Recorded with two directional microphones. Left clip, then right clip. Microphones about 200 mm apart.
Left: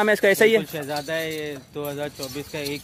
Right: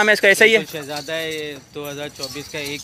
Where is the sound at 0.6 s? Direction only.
55° left (ahead or behind).